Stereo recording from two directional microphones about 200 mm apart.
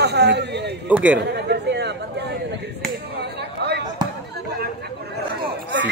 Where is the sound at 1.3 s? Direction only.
55° right (ahead or behind).